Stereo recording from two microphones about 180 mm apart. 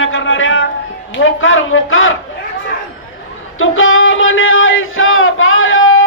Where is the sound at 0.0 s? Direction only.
90° left.